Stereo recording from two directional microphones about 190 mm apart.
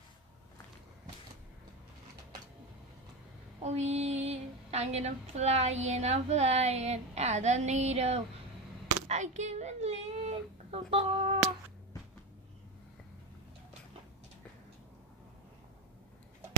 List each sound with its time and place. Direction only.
3.6 s child singing: 35° right (ahead or behind)
9.0 s speech: 40° right (ahead or behind)